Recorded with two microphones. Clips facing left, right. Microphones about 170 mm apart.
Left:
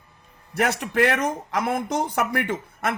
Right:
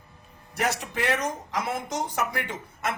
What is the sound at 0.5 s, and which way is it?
Speech, 60° left (ahead or behind).